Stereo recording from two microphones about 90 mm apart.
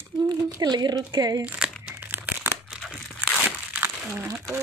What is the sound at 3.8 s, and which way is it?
Crumpling, 25° right (ahead or behind).